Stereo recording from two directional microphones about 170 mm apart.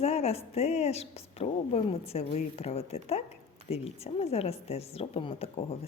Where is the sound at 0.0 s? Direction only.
40° left (ahead or behind).